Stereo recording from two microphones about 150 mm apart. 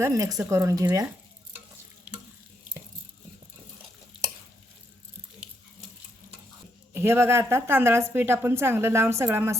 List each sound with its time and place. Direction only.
0.0 s speech: 20° right (ahead or behind)
6.9 s a woman's voice: 15° right (ahead or behind)